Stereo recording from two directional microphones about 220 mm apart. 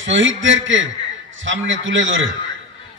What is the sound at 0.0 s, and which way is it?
A man's voice, 60° right (ahead or behind).